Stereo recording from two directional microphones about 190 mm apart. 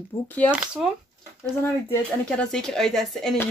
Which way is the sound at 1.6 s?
10° left (ahead or behind).